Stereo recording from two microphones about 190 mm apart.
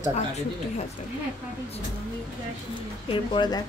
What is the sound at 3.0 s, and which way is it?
Speech, 25° left (ahead or behind).